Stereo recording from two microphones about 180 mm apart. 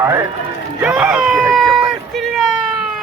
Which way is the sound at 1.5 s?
Centre (ahead or behind).